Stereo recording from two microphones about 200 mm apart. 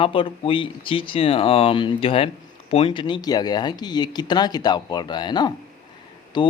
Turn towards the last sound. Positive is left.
turn(degrees=25)  # may be behind; listen again after turning